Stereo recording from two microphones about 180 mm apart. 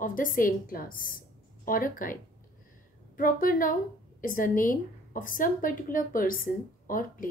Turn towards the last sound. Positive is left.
turn(degrees=50)  # may be behind; listen again after turning